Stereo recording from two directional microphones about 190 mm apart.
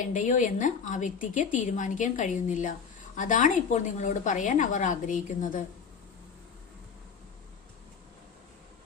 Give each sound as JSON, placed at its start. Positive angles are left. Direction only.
{"t": 0.0, "sound": "a woman's voice", "side_deg": 45}